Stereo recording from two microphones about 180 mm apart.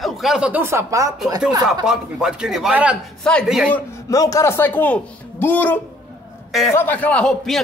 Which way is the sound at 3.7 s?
20° left (ahead or behind).